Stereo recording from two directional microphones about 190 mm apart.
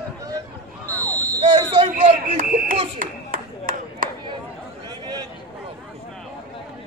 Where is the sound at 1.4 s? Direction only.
30° right (ahead or behind).